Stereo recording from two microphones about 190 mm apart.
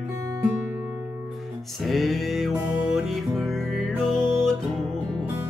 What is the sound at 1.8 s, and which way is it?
Music, centre (ahead or behind).